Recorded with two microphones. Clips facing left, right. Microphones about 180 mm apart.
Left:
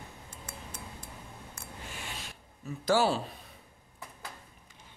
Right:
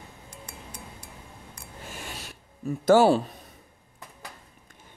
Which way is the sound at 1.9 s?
45° right (ahead or behind).